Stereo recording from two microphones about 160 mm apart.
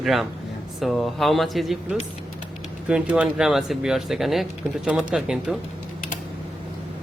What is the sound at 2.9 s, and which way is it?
Speech, 5° right (ahead or behind).